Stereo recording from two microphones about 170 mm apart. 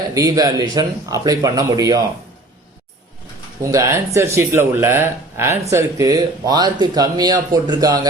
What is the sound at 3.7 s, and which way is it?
Speech, 15° right (ahead or behind).